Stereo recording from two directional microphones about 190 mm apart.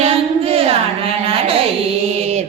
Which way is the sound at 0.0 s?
30° right (ahead or behind).